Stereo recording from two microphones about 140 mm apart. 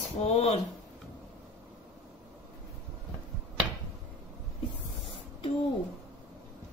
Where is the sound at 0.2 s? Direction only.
50° left (ahead or behind).